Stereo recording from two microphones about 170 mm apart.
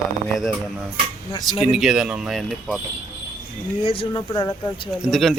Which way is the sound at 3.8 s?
35° left (ahead or behind).